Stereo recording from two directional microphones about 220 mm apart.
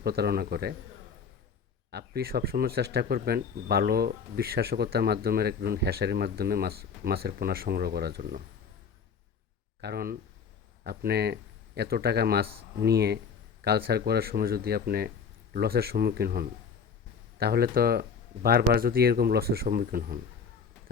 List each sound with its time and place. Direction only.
0.0 s speech: 45° right (ahead or behind)
1.9 s speech: 45° right (ahead or behind)
9.8 s speech: 45° right (ahead or behind)